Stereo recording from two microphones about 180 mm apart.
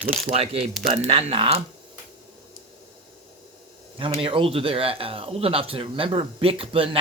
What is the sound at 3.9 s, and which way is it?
Speech, 30° right (ahead or behind).